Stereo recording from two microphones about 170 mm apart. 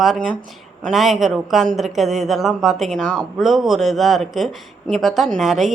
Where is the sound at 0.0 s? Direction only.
Centre (ahead or behind).